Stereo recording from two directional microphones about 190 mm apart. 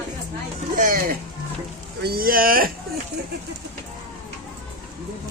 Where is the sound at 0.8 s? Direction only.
45° right (ahead or behind).